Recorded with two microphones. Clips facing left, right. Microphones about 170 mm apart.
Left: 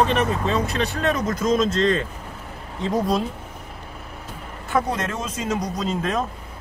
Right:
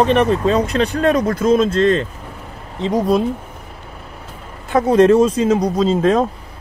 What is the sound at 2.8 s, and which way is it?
Speech, 20° right (ahead or behind).